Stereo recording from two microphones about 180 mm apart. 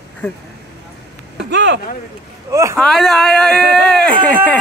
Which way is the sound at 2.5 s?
15° right (ahead or behind).